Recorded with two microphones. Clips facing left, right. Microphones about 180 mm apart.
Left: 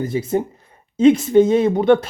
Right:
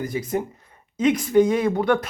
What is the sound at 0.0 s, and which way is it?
Speech, 25° left (ahead or behind).